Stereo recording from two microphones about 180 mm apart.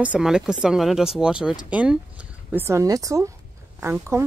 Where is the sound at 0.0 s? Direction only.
5° right (ahead or behind).